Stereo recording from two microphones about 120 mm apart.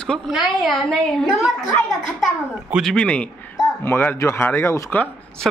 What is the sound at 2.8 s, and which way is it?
A woman's voice, 5° left (ahead or behind).